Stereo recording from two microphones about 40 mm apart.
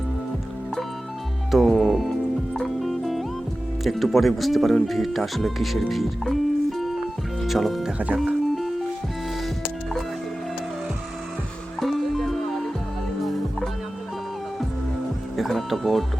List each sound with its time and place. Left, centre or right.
1.5 s music: centre
3.8 s speech: centre
7.4 s music: centre
7.9 s speech: right
11.8 s music: centre
15.4 s music: centre